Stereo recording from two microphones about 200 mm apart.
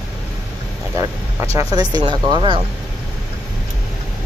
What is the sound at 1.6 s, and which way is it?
Speech, 20° right (ahead or behind).